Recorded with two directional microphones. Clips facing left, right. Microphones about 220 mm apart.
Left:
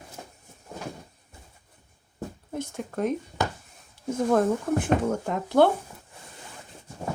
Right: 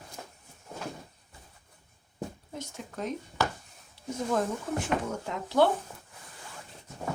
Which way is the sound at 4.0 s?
50° left (ahead or behind).